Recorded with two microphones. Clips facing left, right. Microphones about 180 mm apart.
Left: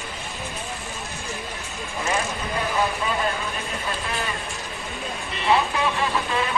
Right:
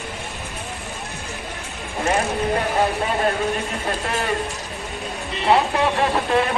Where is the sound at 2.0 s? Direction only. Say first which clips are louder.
Right 6 dB; 60° right (ahead or behind).